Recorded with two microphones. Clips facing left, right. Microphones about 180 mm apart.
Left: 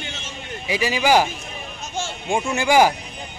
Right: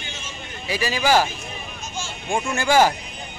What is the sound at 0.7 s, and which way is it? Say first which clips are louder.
Speech: left 2 dB; 15° left (ahead or behind).